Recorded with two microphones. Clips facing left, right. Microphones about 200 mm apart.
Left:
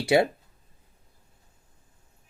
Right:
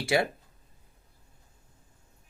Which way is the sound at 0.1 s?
25° left (ahead or behind).